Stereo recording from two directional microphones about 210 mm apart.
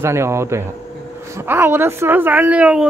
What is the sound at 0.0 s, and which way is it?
Speech, 10° right (ahead or behind).